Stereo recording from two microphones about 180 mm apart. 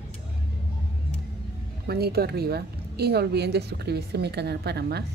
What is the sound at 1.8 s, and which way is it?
A woman's voice, 60° right (ahead or behind).